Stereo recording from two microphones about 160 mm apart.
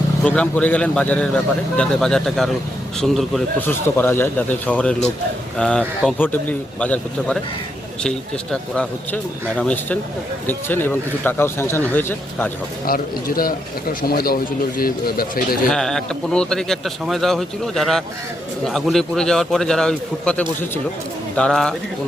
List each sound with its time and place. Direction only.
0.3 s speech: 10° left (ahead or behind)
3.7 s speech: 15° left (ahead or behind)
8.7 s speech: 5° left (ahead or behind)
12.8 s a man's voice: 65° left (ahead or behind)
15.7 s speech: 5° left (ahead or behind)